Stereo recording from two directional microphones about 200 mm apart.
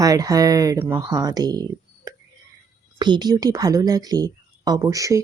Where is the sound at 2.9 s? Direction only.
20° right (ahead or behind).